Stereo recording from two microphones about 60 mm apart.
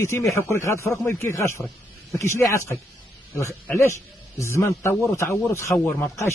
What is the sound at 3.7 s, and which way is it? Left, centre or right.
Speech, left.